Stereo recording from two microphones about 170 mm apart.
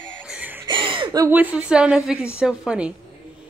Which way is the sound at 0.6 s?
30° right (ahead or behind).